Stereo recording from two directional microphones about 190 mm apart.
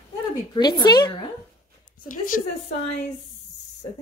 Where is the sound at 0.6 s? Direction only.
20° left (ahead or behind).